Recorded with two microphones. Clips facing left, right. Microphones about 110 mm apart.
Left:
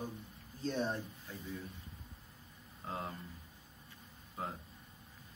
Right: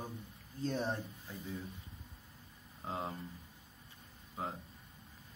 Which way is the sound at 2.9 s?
20° right (ahead or behind).